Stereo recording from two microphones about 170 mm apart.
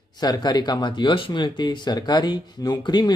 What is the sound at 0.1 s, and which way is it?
Speech, 25° left (ahead or behind).